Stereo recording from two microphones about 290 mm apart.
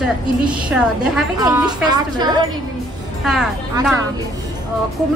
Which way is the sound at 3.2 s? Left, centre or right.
Centre.